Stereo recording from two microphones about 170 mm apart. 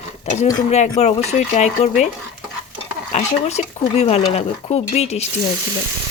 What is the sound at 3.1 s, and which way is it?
Speech, 40° left (ahead or behind).